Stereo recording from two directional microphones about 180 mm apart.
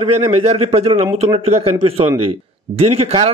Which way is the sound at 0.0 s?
35° right (ahead or behind).